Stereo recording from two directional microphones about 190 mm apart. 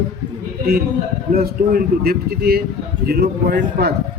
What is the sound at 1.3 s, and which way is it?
A man's voice, 50° right (ahead or behind).